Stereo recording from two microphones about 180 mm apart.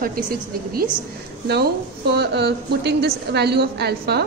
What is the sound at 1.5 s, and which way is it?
A woman's voice, 65° right (ahead or behind).